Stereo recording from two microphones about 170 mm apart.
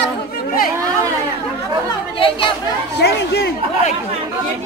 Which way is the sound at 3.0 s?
75° left (ahead or behind).